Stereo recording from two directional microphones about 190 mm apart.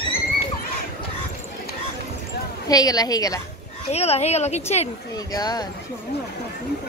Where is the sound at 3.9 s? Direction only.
35° left (ahead or behind).